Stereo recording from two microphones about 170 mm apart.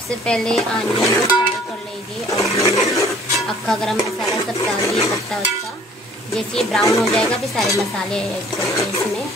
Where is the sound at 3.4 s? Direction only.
Centre (ahead or behind).